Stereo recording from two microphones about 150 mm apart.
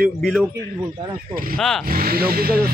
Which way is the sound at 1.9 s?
75° right (ahead or behind).